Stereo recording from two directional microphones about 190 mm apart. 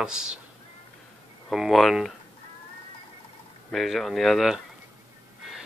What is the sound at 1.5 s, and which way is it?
Speech, centre (ahead or behind).